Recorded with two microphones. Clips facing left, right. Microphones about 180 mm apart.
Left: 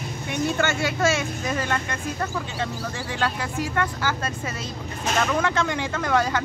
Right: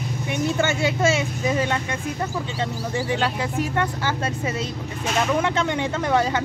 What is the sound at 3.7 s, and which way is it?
Speech, 25° right (ahead or behind).